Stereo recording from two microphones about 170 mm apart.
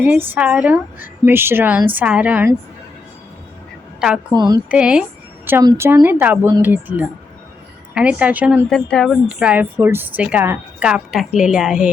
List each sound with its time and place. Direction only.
0.0 s a woman's voice: 10° right (ahead or behind)
4.4 s a woman's voice: 20° right (ahead or behind)
4.7 s a woman's voice: 5° right (ahead or behind)
8.7 s a woman's voice: 5° left (ahead or behind)